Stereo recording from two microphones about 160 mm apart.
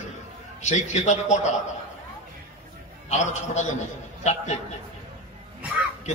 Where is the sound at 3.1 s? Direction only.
45° left (ahead or behind).